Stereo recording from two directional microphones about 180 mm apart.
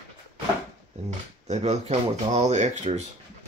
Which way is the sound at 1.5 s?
35° right (ahead or behind).